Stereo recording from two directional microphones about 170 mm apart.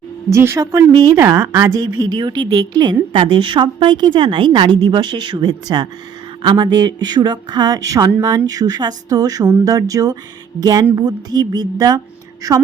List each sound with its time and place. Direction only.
0.3 s a woman's voice: 15° right (ahead or behind)